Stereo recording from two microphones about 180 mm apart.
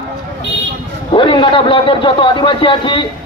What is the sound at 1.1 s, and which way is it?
A man's voice, 25° left (ahead or behind).